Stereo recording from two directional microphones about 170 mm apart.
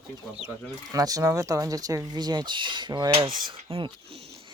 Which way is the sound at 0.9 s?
20° right (ahead or behind).